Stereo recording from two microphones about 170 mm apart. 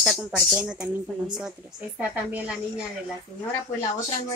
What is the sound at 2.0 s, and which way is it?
Speech, 10° right (ahead or behind).